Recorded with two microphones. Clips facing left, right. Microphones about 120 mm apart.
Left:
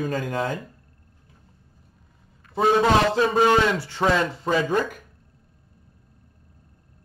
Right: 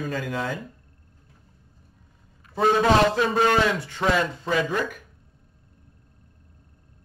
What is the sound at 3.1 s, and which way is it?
Speech, 25° left (ahead or behind).